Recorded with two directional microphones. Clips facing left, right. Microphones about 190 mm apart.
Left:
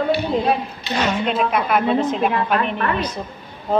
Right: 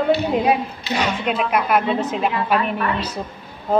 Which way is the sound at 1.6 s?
5° right (ahead or behind).